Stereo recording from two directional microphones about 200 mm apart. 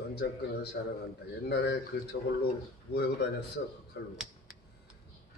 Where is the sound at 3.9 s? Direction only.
55° left (ahead or behind).